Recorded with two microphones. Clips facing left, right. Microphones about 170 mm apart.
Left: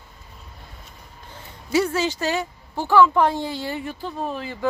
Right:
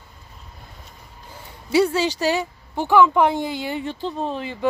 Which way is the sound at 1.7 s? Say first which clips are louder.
Right 3 dB; 15° right (ahead or behind).